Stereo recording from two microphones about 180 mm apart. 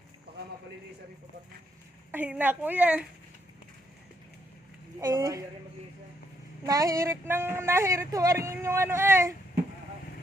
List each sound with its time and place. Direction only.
2.1 s a woman's voice: 10° right (ahead or behind)
4.9 s a woman's voice: 20° right (ahead or behind)
6.7 s a woman's voice: 20° right (ahead or behind)